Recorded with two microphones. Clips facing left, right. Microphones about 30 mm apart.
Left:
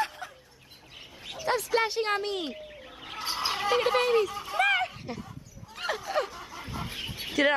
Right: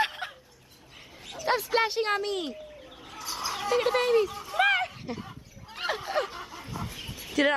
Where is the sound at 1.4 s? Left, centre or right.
Centre.